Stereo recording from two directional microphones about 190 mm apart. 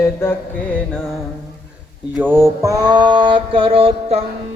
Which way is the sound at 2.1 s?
10° right (ahead or behind).